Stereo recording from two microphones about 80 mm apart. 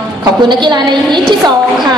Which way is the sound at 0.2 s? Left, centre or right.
Right.